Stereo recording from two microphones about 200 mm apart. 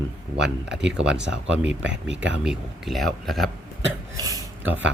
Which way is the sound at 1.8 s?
60° right (ahead or behind).